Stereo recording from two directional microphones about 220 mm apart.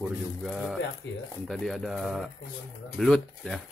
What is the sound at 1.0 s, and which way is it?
Speech, 50° left (ahead or behind).